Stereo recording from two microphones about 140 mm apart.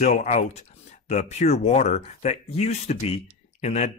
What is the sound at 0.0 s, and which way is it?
Speech, 55° left (ahead or behind).